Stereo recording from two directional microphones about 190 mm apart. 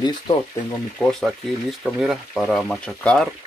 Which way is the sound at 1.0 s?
Centre (ahead or behind).